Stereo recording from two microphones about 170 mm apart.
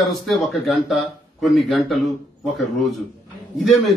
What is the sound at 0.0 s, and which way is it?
A man's voice, centre (ahead or behind).